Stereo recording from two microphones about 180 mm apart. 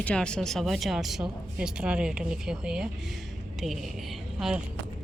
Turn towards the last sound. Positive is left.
turn(degrees=-5)  # may be behind; listen again after turning